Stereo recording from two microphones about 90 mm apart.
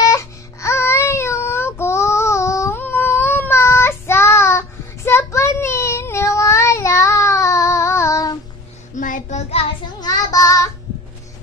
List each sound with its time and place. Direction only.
0.1 s music: 35° left (ahead or behind)
9.9 s child singing: 45° left (ahead or behind)